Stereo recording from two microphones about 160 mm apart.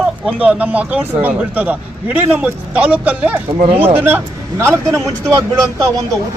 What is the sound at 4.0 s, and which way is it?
A man's voice, 15° right (ahead or behind).